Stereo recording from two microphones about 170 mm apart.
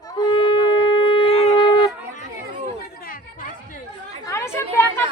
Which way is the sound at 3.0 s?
55° left (ahead or behind).